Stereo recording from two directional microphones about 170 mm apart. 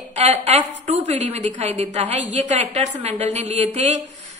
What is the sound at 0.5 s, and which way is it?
A woman's voice, 40° right (ahead or behind).